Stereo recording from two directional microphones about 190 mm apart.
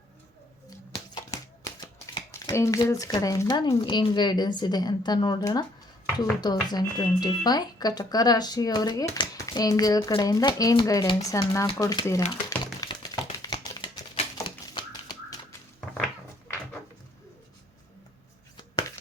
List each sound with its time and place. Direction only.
1.1 s typewriter: 20° left (ahead or behind)
2.5 s speech: 15° left (ahead or behind)
12.3 s a sound: 20° left (ahead or behind)